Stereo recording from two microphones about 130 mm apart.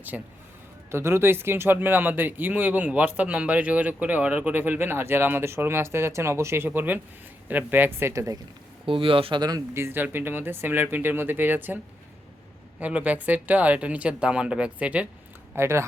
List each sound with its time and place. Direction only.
0.1 s speech: 10° right (ahead or behind)
0.9 s speech: 20° right (ahead or behind)
8.9 s speech: 40° right (ahead or behind); by 11.8 s 15° right (ahead or behind)
12.8 s speech: 10° right (ahead or behind)